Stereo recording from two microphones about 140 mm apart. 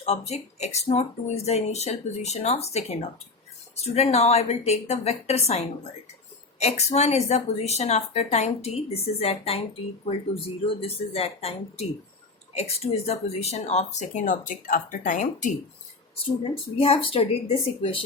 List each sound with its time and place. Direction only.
0.0 s speech: 50° left (ahead or behind); by 15.5 s 65° left (ahead or behind)
16.4 s speech: 45° left (ahead or behind)